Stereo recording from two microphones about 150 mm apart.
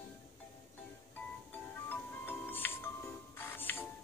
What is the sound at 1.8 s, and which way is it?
Music, 15° left (ahead or behind).